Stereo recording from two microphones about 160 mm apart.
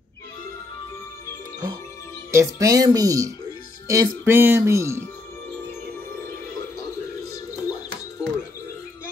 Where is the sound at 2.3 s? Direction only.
20° right (ahead or behind).